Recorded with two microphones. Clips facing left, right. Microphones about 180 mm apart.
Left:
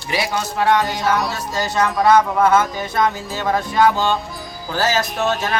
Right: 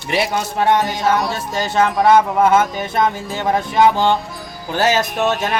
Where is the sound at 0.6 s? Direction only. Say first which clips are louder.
Right 1 dB; 20° right (ahead or behind).